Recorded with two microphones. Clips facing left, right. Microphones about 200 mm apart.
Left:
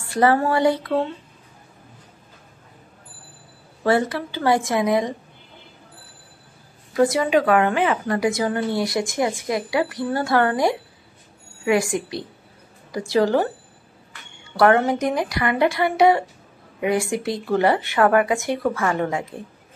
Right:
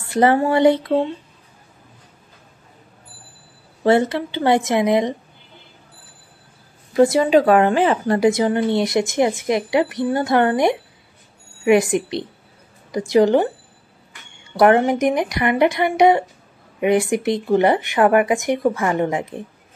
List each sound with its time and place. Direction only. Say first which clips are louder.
0.1 s speech: right 3 dB; 20° right (ahead or behind)
3.8 s speech: right 4 dB; 25° right (ahead or behind)
6.9 s speech: right 4 dB; 25° right (ahead or behind)
14.6 s speech: right 3 dB; 15° right (ahead or behind)